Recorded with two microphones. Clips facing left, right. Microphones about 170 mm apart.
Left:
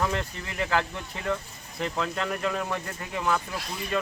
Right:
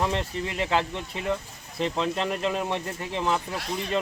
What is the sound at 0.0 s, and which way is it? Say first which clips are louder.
Speech: right 2 dB; 20° right (ahead or behind).